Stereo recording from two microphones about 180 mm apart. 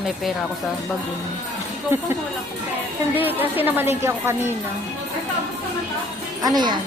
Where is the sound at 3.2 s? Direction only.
10° right (ahead or behind).